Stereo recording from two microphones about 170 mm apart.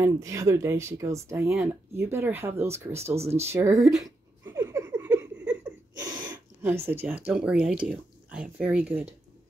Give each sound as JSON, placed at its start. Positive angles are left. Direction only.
{"t": 0.0, "sound": "speech", "side_deg": -20}
{"t": 1.5, "sound": "speech", "side_deg": -5}
{"t": 2.0, "sound": "speech", "side_deg": -15}
{"t": 3.8, "sound": "speech", "side_deg": 0}
{"t": 4.5, "sound": "a sound", "side_deg": -15}
{"t": 5.9, "sound": "speech", "side_deg": -20}